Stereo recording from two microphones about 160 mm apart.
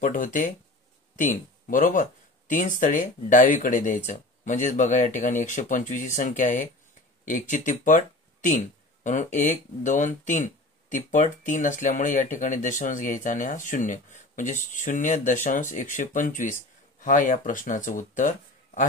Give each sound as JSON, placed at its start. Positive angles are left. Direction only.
{"t": 0.0, "sound": "speech", "side_deg": 55}